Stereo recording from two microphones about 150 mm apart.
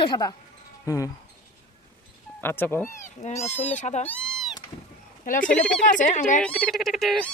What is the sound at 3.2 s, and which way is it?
Speech, 50° left (ahead or behind).